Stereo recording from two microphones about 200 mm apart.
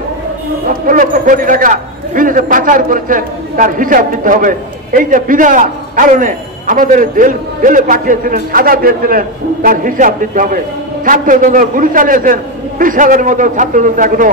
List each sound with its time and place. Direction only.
0.8 s a man's voice: 40° right (ahead or behind)